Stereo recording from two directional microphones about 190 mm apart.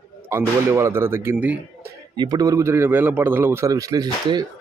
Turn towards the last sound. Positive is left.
turn(degrees=-20)  # may be behind; listen again after turning